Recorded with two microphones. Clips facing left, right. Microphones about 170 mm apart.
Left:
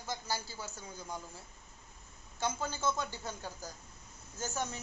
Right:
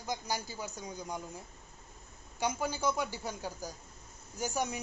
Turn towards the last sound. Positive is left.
turn(degrees=-15)  # may be behind; listen again after turning